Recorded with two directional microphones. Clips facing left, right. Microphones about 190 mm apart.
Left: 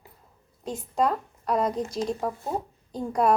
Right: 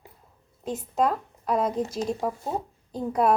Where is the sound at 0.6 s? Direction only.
5° right (ahead or behind).